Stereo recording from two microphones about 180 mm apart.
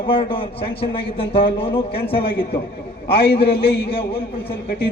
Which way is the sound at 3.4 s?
65° left (ahead or behind).